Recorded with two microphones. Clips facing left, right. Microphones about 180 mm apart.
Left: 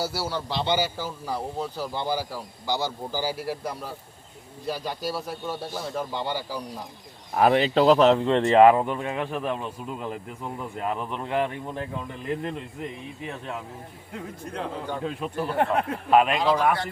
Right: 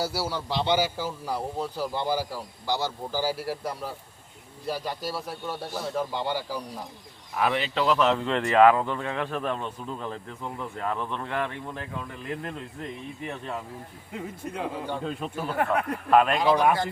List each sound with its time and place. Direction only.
0.1 s speech: 5° right (ahead or behind)
7.3 s a man's voice: 40° left (ahead or behind); by 12.5 s 20° left (ahead or behind)
14.1 s speech: 5° right (ahead or behind)
15.5 s speech: 30° left (ahead or behind)
16.0 s speech: 5° left (ahead or behind)